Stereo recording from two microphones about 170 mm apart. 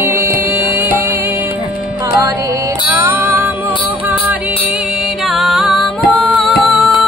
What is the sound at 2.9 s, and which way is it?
Music, 15° right (ahead or behind).